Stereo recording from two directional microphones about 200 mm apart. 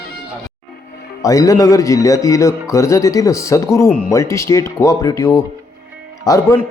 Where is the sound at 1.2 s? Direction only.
15° left (ahead or behind).